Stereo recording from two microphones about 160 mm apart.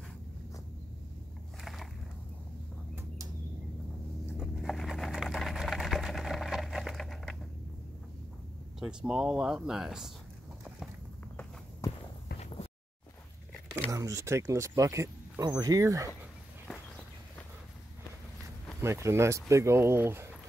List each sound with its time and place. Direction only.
1.6 s a sound: centre (ahead or behind)
4.4 s sewing machine: centre (ahead or behind)
8.7 s speech: 5° right (ahead or behind)
13.8 s speech: 20° right (ahead or behind)
18.8 s speech: 15° right (ahead or behind)